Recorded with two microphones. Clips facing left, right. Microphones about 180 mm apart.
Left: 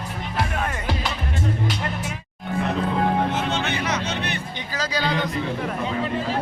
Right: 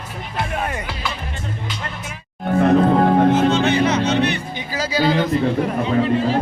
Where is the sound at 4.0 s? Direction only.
60° right (ahead or behind).